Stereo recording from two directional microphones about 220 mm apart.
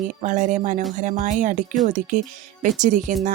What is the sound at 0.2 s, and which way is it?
Speech, 35° right (ahead or behind).